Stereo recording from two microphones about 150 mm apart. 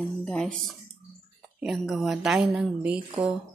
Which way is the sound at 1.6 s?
Centre (ahead or behind).